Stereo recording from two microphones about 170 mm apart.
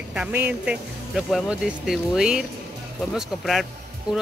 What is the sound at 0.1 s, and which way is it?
Speech, 10° right (ahead or behind).